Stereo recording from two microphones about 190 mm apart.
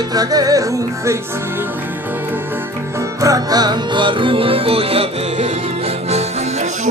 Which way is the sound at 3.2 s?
20° right (ahead or behind).